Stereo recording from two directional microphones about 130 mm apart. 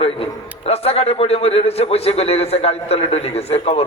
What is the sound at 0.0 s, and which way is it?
A man's voice, 50° left (ahead or behind).